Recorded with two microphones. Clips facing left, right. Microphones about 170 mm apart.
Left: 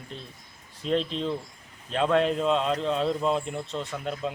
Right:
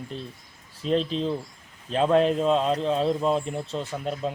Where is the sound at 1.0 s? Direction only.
Centre (ahead or behind).